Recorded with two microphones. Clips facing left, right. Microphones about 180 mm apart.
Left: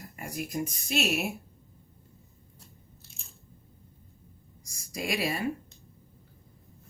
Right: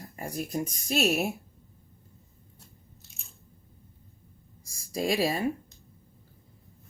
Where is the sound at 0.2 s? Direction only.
35° right (ahead or behind).